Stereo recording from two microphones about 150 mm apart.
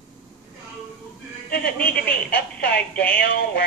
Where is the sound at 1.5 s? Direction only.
90° left.